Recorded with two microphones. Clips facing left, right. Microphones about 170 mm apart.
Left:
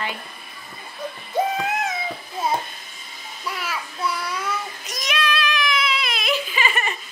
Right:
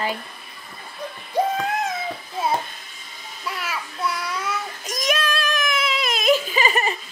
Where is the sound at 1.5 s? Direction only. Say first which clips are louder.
Even; 5° left (ahead or behind).